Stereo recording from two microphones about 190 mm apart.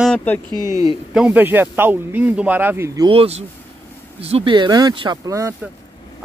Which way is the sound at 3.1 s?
30° right (ahead or behind).